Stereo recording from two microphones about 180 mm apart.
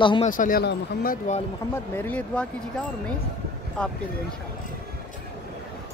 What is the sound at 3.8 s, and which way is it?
Speech, 5° left (ahead or behind).